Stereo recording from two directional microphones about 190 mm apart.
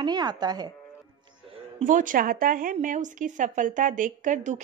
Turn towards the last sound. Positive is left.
turn(degrees=-40)  # may be behind; listen again after turning